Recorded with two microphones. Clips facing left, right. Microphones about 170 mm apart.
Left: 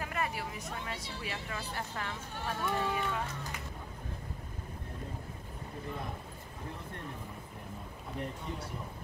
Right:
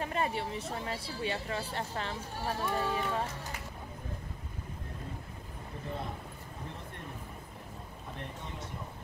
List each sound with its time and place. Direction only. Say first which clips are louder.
0.0 s speech: right 3 dB; 30° right (ahead or behind)